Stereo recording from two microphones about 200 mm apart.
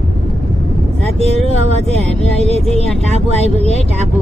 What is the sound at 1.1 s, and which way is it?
Speech, 30° right (ahead or behind).